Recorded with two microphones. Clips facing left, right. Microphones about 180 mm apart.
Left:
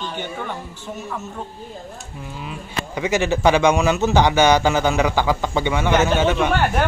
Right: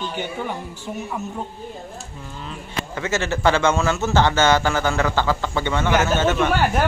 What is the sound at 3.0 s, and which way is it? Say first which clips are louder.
A man's voice: left 4 dB; 15° left (ahead or behind).